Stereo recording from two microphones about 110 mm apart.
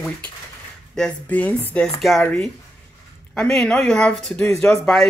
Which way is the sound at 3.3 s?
5° left (ahead or behind).